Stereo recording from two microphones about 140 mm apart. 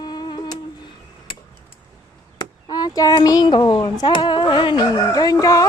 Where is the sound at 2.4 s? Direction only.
30° left (ahead or behind).